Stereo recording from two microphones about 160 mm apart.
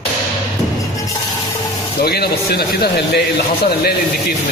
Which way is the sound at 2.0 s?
75° left (ahead or behind).